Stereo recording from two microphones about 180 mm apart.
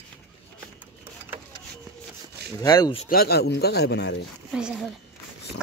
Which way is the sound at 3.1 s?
60° left (ahead or behind).